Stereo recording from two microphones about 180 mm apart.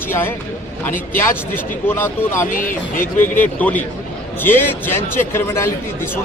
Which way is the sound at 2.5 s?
50° left (ahead or behind).